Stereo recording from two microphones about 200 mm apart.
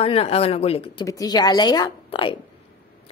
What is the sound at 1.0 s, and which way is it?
A woman's voice, 20° left (ahead or behind).